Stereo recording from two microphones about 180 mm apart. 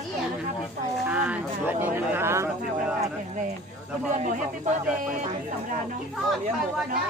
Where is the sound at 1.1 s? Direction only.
10° right (ahead or behind).